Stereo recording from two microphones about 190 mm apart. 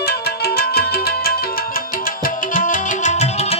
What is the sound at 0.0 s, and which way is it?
Music, 55° left (ahead or behind).